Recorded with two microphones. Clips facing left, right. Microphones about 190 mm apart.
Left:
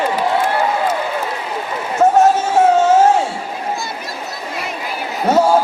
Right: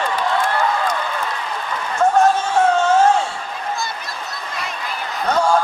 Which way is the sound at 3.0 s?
5° left (ahead or behind).